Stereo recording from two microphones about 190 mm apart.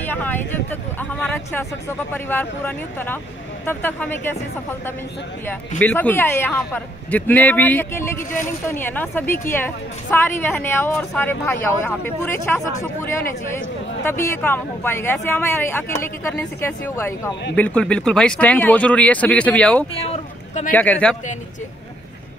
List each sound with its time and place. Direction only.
0.0 s speech: 10° left (ahead or behind)
5.8 s speech: 10° left (ahead or behind)
14.3 s speech: 10° left (ahead or behind)
19.9 s a sound: 30° left (ahead or behind)
20.7 s speech: 10° left (ahead or behind)